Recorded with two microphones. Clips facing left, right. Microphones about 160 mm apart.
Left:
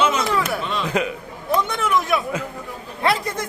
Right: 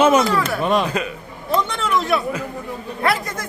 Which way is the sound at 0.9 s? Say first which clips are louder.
Left 2 dB; 20° left (ahead or behind).